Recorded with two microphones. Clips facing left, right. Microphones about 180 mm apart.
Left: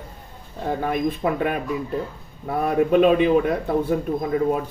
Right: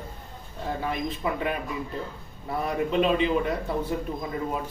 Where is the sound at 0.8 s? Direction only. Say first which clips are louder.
Left 7 dB; 55° left (ahead or behind).